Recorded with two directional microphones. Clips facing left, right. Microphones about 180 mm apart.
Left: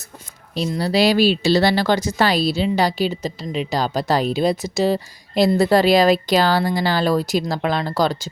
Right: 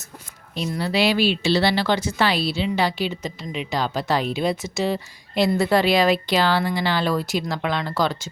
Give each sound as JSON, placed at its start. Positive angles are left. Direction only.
{"t": 0.8, "sound": "speech", "side_deg": 40}